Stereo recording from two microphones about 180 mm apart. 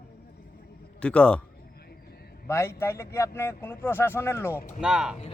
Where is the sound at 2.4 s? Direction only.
15° left (ahead or behind).